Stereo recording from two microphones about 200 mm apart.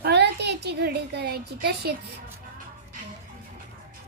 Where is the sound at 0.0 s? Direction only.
55° right (ahead or behind).